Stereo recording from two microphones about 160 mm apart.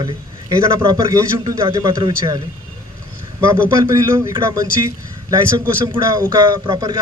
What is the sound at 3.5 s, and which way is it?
A man's voice, 15° right (ahead or behind).